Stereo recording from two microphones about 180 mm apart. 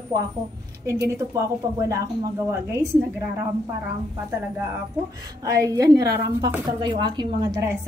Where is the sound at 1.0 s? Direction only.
15° right (ahead or behind).